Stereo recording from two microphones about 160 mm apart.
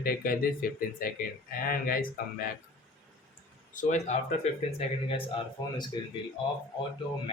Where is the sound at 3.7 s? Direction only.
45° left (ahead or behind).